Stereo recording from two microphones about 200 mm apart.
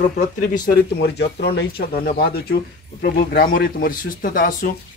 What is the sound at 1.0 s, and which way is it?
Speech, 55° left (ahead or behind).